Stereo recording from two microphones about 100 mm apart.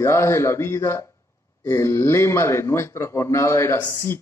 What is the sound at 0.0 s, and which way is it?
A man's voice, 30° left (ahead or behind).